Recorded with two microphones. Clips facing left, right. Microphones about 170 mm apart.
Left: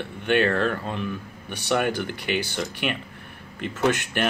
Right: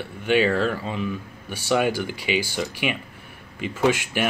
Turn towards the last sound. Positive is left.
turn(degrees=-10)  # may be behind; listen again after turning